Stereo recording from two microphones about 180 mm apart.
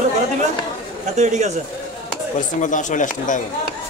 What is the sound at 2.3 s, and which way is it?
Speech, 45° left (ahead or behind).